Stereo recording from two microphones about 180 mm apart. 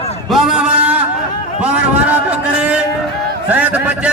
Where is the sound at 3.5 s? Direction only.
10° right (ahead or behind).